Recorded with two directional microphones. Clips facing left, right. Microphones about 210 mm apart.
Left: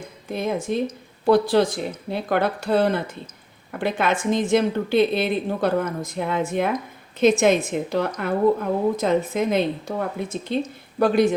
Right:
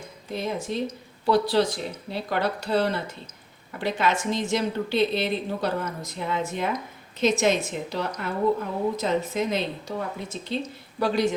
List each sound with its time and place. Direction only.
0.3 s a woman's voice: 55° left (ahead or behind)